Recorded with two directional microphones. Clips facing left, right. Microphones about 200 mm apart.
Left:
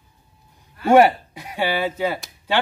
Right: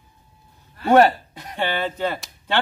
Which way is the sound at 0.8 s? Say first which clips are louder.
Left 1 dB; 10° left (ahead or behind).